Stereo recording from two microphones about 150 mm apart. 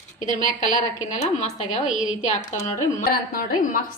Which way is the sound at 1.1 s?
50° left (ahead or behind).